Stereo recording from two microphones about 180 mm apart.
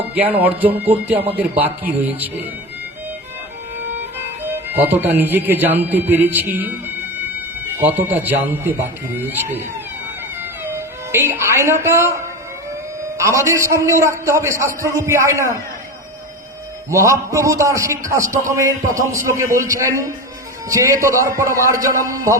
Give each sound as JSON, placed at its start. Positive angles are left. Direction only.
{"t": 0.1, "sound": "speech", "side_deg": -10}
{"t": 4.5, "sound": "speech", "side_deg": -10}
{"t": 16.9, "sound": "speech", "side_deg": -15}